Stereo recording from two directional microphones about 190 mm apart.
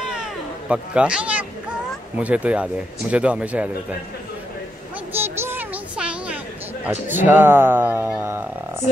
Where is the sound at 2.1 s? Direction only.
5° right (ahead or behind).